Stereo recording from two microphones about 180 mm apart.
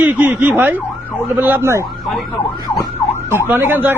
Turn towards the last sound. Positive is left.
turn(degrees=-10)  # may be behind; listen again after turning